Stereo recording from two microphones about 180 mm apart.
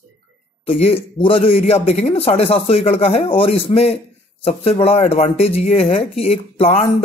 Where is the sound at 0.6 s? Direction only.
30° left (ahead or behind).